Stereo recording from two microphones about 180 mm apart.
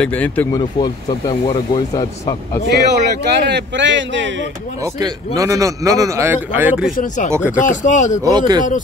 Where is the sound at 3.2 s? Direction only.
70° right (ahead or behind); by 4.5 s 90° right.